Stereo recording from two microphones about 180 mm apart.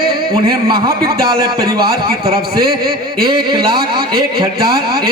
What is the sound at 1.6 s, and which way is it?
Speech, 20° right (ahead or behind).